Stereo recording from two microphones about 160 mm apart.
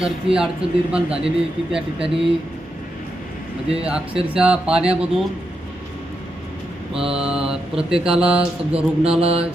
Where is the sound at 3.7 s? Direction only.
5° right (ahead or behind).